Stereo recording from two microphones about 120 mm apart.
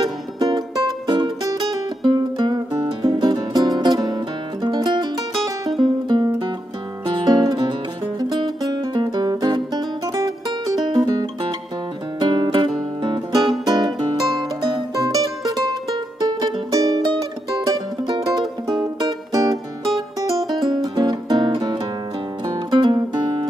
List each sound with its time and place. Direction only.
0.0 s music: 35° right (ahead or behind)
15.0 s music: 30° right (ahead or behind)